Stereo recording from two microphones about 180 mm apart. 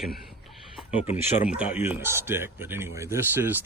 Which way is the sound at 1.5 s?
5° right (ahead or behind).